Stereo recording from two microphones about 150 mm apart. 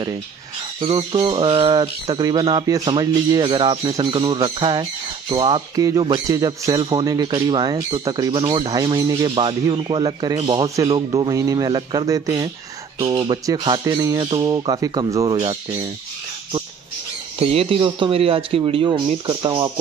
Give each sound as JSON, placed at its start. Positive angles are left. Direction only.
{"t": 0.7, "sound": "a man's voice", "side_deg": -35}
{"t": 17.4, "sound": "speech", "side_deg": -40}